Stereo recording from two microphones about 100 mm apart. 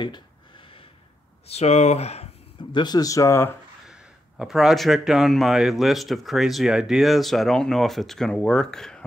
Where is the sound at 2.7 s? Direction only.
45° left (ahead or behind); by 3.5 s 25° left (ahead or behind).